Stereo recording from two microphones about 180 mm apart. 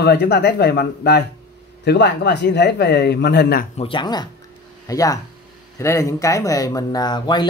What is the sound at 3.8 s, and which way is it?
Speech, 25° left (ahead or behind).